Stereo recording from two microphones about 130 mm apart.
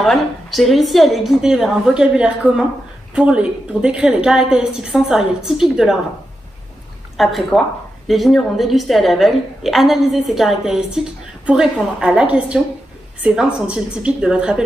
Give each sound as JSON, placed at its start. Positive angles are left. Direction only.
{"t": 0.0, "sound": "a woman's voice", "side_deg": 0}
{"t": 7.2, "sound": "a woman's voice", "side_deg": 0}